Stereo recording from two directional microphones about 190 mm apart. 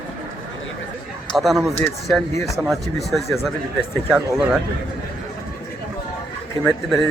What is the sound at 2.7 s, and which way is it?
Speech, centre (ahead or behind).